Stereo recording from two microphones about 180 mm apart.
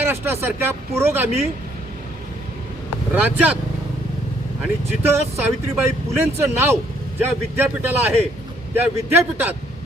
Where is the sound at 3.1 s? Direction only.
10° right (ahead or behind).